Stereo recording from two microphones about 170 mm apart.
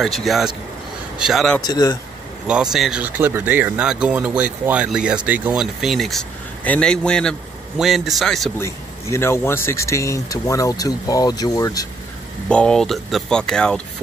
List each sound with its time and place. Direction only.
0.0 s speech: centre (ahead or behind)
1.6 s speech: 25° left (ahead or behind)
2.4 s speech: 5° right (ahead or behind)
8.5 s a man's voice: 15° left (ahead or behind)
12.4 s speech: 5° left (ahead or behind)